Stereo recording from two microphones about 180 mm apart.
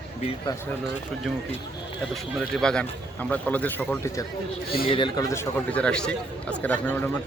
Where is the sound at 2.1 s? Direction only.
5° left (ahead or behind).